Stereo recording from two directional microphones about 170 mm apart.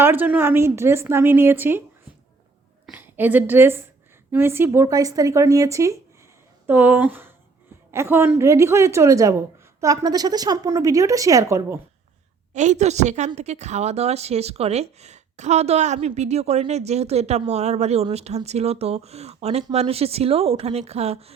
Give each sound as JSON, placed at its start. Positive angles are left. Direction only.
{"t": 0.0, "sound": "a woman's voice", "side_deg": -10}
{"t": 2.8, "sound": "a woman's voice", "side_deg": -10}
{"t": 12.5, "sound": "a woman's voice", "side_deg": -45}